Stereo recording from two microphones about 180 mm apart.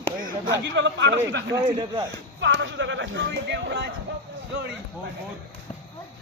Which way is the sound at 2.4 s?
90° right.